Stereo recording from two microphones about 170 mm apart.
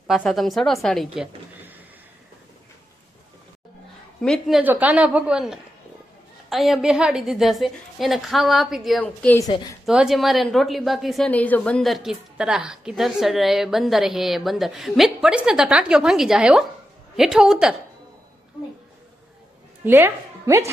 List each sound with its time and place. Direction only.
0.2 s a woman's voice: centre (ahead or behind)
4.2 s a woman's voice: centre (ahead or behind)
4.6 s a woman's voice: 10° right (ahead or behind); by 9.4 s 5° left (ahead or behind)
9.4 s a woman's voice: 20° left (ahead or behind)
9.8 s a woman's voice: 5° right (ahead or behind)
19.8 s a woman's voice: 10° right (ahead or behind)